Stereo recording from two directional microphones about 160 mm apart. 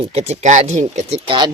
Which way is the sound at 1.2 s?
30° right (ahead or behind).